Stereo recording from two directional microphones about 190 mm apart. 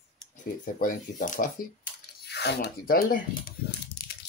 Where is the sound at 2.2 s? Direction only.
60° left (ahead or behind).